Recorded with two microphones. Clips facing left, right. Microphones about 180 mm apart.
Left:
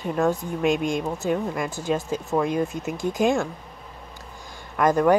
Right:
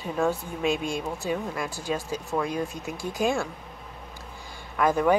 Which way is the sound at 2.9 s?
20° left (ahead or behind).